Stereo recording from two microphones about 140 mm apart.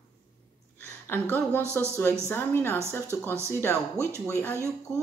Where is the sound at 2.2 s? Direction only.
15° left (ahead or behind).